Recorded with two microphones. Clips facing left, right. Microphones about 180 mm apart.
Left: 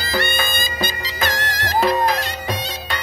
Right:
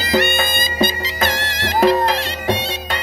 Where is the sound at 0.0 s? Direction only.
20° right (ahead or behind).